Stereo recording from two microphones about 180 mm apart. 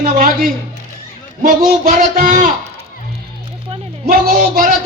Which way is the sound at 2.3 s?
45° right (ahead or behind).